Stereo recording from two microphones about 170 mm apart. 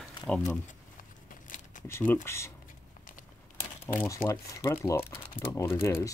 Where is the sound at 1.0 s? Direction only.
50° left (ahead or behind).